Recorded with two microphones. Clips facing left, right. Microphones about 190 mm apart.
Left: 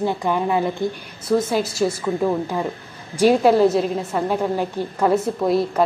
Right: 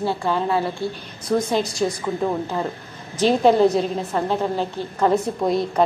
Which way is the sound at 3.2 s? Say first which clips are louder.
Left 1 dB; 10° left (ahead or behind).